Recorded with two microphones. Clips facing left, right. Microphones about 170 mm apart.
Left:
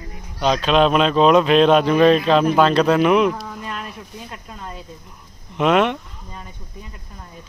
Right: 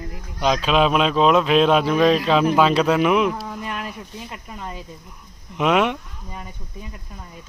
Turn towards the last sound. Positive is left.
turn(degrees=-5)  # may be behind; listen again after turning